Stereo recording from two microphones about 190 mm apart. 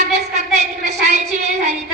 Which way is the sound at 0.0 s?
35° right (ahead or behind).